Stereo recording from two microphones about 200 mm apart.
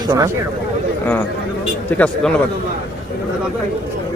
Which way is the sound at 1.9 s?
5° left (ahead or behind).